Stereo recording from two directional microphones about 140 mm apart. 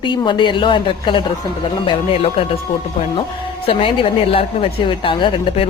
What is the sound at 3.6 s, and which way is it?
Speech, 40° left (ahead or behind).